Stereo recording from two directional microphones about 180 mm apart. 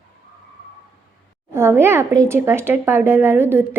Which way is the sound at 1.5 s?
15° right (ahead or behind).